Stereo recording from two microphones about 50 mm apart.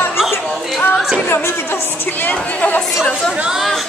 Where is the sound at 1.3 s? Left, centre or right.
Left.